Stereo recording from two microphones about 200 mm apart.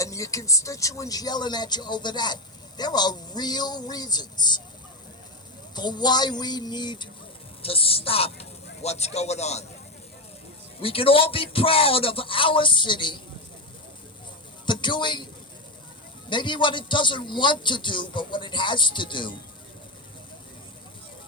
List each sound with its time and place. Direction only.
0.0 s speech: 15° left (ahead or behind)
5.7 s a woman's voice: 20° left (ahead or behind)
10.8 s speech: 25° left (ahead or behind)
14.7 s speech: 25° left (ahead or behind)
16.3 s speech: 25° left (ahead or behind)